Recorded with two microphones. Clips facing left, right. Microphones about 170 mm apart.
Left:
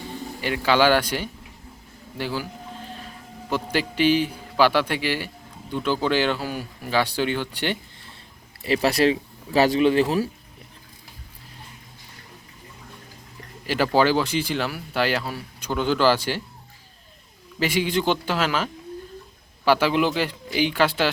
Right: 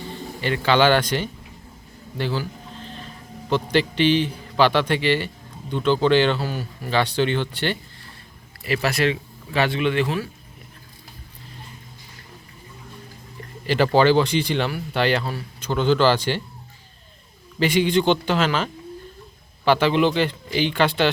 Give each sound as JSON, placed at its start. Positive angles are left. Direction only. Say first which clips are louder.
{"t": 0.4, "sound": "speech", "louder": "right 1 dB", "side_deg": 10}
{"t": 2.1, "sound": "a sound", "louder": "right 2 dB", "side_deg": 10}
{"t": 3.5, "sound": "speech", "louder": "right 4 dB", "side_deg": 5}
{"t": 8.6, "sound": "speech", "louder": "left 2 dB", "side_deg": 30}
{"t": 13.7, "sound": "speech", "louder": "right 3 dB", "side_deg": 5}
{"t": 17.6, "sound": "speech", "louder": "right 4 dB", "side_deg": 5}